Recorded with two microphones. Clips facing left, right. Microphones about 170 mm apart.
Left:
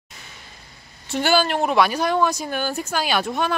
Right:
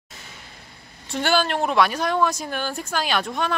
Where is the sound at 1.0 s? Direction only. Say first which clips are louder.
Left 2 dB; 5° left (ahead or behind).